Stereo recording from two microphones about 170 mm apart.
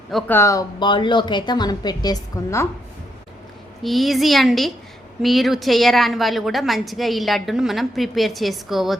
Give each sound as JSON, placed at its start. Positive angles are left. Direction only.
{"t": 0.1, "sound": "a woman's voice", "side_deg": 0}
{"t": 0.3, "sound": "a woman's voice", "side_deg": 20}
{"t": 3.8, "sound": "a woman's voice", "side_deg": 0}